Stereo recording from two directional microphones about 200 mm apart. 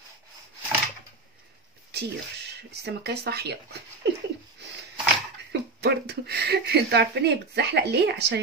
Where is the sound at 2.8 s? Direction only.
55° right (ahead or behind).